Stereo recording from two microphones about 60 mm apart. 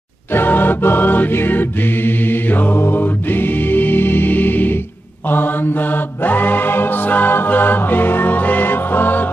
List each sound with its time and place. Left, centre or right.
0.3 s music: left
5.3 s mantra: left